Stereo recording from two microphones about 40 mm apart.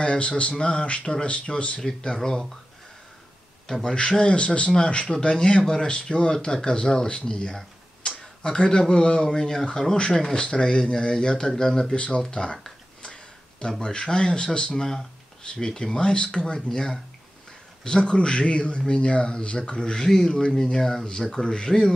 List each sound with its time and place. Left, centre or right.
0.0 s speech: left
3.6 s speech: centre
4.3 s speech: left
20.8 s speech: centre